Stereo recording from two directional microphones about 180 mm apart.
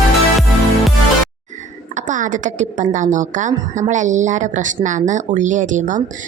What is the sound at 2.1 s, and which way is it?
Speech, 45° right (ahead or behind).